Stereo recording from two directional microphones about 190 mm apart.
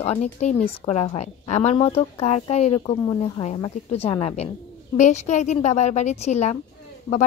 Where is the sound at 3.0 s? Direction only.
20° left (ahead or behind).